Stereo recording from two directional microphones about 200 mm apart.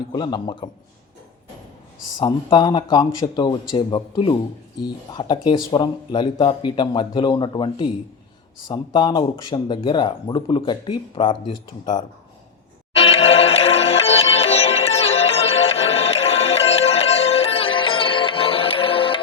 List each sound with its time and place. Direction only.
0.1 s speech: 20° left (ahead or behind)
2.1 s speech: 20° left (ahead or behind)
12.9 s music: 30° left (ahead or behind)